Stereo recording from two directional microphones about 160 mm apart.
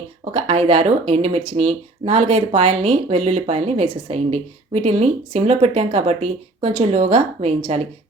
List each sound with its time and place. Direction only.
0.3 s speech: 40° right (ahead or behind)